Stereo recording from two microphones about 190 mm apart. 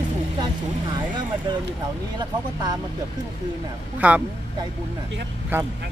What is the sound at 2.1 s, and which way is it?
Speech, 20° right (ahead or behind).